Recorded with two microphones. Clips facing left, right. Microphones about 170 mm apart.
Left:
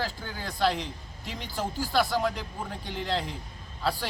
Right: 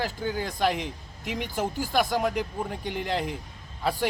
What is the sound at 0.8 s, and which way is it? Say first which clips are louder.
Speech: right 5 dB; 55° right (ahead or behind).